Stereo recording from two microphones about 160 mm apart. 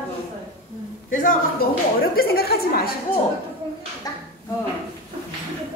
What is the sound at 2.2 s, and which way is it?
Speech, 75° left (ahead or behind).